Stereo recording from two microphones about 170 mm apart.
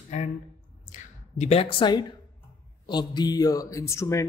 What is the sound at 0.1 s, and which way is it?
Speech, 45° left (ahead or behind).